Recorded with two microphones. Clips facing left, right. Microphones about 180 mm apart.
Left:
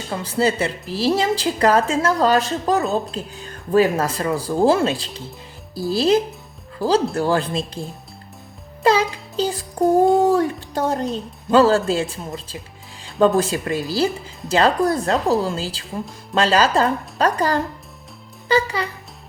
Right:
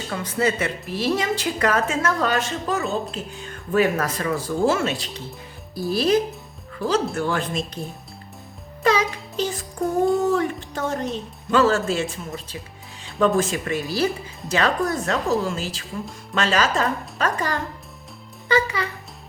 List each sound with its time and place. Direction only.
0.1 s a woman's voice: 30° left (ahead or behind)
6.7 s a woman's voice: 35° left (ahead or behind)
8.8 s music: 30° left (ahead or behind)
9.3 s child singing: 35° left (ahead or behind)
10.2 s a woman's voice: 35° left (ahead or behind)